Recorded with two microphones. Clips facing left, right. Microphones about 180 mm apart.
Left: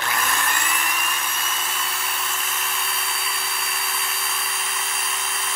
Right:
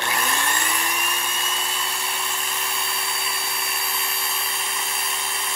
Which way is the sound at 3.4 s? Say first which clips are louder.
Even; 15° right (ahead or behind).